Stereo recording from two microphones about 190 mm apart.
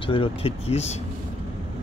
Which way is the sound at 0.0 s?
30° left (ahead or behind).